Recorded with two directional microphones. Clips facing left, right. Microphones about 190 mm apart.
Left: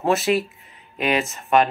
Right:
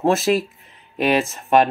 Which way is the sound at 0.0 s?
45° right (ahead or behind).